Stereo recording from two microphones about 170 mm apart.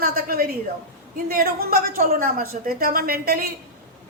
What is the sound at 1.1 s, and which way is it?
A woman's voice, 60° right (ahead or behind).